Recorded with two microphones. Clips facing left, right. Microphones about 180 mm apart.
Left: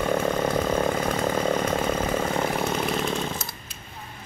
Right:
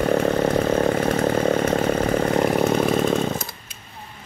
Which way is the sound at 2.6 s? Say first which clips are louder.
Right 7 dB; 55° right (ahead or behind).